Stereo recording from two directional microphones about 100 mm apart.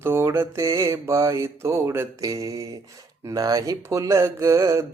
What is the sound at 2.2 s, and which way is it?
Mantra, 35° right (ahead or behind).